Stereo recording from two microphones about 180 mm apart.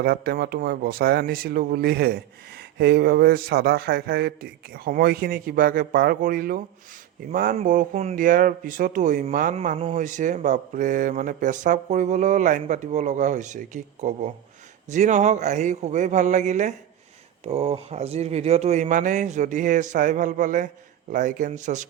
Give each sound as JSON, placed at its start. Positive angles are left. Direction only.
{"t": 0.0, "sound": "a man's voice", "side_deg": -60}